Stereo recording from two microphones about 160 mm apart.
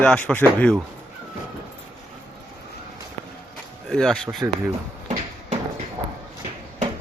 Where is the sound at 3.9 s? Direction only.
Centre (ahead or behind).